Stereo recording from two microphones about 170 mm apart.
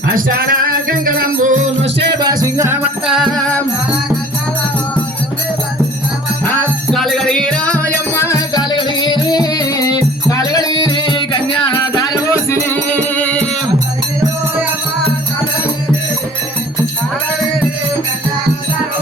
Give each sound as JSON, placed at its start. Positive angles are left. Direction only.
{"t": 0.1, "sound": "music", "side_deg": -60}
{"t": 2.1, "sound": "music", "side_deg": -25}
{"t": 3.1, "sound": "music", "side_deg": 0}
{"t": 6.4, "sound": "music", "side_deg": 10}